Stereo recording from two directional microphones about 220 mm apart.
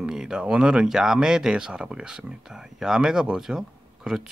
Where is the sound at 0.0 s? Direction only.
5° right (ahead or behind).